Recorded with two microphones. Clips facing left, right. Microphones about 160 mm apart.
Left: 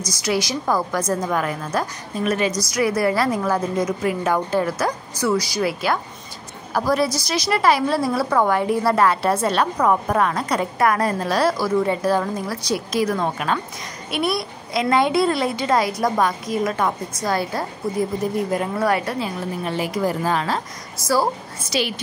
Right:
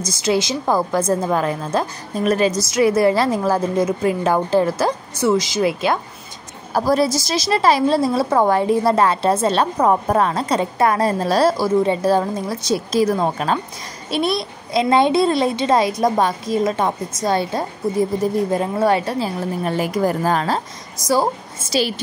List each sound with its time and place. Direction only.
0.0 s a woman's voice: 25° right (ahead or behind); by 20.6 s 40° right (ahead or behind)
21.0 s a woman's voice: 20° right (ahead or behind)